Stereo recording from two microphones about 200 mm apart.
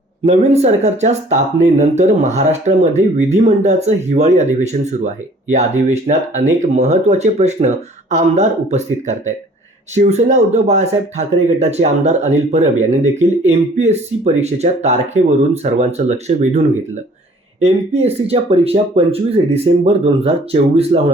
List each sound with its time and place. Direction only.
0.3 s speech: 35° right (ahead or behind)